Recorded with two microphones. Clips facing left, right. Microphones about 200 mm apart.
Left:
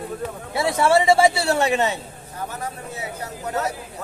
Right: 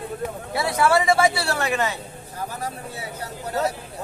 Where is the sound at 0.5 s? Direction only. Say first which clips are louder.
Left 2 dB; 25° left (ahead or behind).